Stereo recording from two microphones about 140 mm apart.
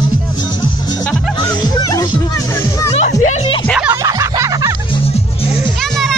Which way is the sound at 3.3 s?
45° left (ahead or behind).